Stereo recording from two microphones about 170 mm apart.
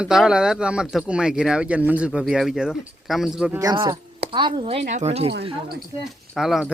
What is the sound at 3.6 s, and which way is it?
A woman's voice, 25° right (ahead or behind).